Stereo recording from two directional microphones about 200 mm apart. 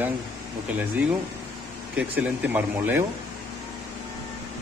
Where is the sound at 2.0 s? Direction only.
5° right (ahead or behind).